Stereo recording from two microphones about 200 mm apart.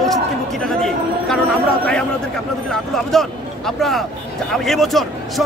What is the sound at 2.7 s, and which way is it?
A man's voice, centre (ahead or behind).